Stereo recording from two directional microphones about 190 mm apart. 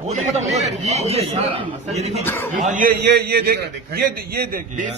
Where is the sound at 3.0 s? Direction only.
60° right (ahead or behind).